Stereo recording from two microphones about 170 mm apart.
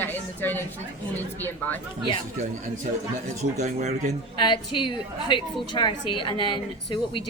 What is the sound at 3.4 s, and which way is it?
Speech, 45° right (ahead or behind).